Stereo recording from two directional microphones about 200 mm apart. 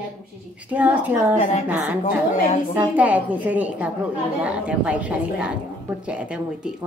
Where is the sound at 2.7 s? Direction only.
10° right (ahead or behind).